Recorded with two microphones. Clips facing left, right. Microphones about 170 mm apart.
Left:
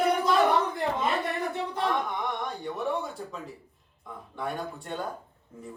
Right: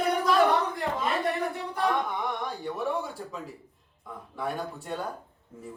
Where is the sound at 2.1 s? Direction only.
Centre (ahead or behind).